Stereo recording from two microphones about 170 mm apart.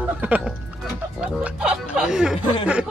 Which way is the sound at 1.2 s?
5° right (ahead or behind).